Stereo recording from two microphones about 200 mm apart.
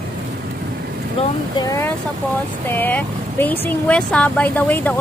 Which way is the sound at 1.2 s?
20° left (ahead or behind).